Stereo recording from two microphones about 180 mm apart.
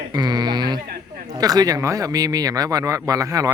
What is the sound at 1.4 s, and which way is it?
Speech, 20° right (ahead or behind).